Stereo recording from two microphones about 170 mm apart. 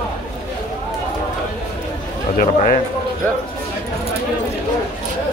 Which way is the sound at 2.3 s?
50° left (ahead or behind).